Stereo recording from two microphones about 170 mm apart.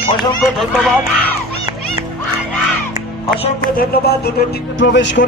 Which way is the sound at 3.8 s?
65° left (ahead or behind).